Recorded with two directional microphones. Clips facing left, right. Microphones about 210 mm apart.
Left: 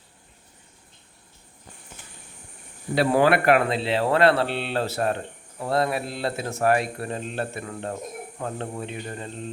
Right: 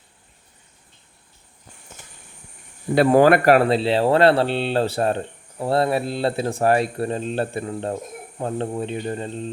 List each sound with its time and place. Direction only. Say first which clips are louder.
2.9 s speech: right 5 dB; 50° right (ahead or behind); by 9.5 s 35° right (ahead or behind)